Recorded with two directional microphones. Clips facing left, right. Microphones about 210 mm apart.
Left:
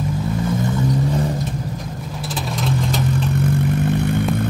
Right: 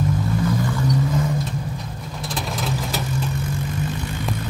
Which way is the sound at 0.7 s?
30° left (ahead or behind).